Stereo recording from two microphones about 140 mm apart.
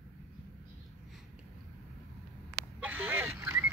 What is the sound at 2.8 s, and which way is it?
Duck, 15° right (ahead or behind).